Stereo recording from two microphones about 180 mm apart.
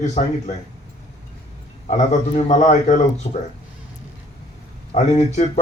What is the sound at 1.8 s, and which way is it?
Speech, 40° left (ahead or behind).